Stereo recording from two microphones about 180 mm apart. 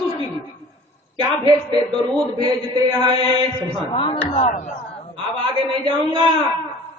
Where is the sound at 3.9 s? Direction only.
30° left (ahead or behind).